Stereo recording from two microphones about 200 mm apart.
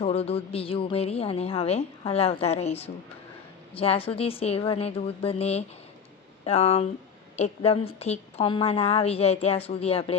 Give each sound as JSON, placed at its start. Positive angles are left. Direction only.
{"t": 0.0, "sound": "a woman's voice", "side_deg": 30}